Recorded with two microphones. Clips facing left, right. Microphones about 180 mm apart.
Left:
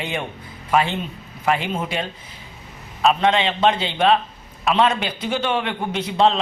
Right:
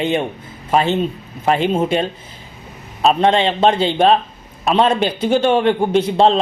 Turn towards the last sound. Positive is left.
turn(degrees=-35)  # may be behind; listen again after turning